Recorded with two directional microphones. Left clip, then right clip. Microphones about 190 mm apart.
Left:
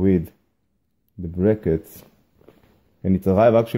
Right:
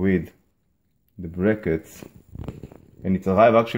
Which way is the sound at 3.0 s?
40° left (ahead or behind).